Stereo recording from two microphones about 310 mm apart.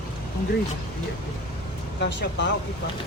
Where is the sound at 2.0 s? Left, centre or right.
Left.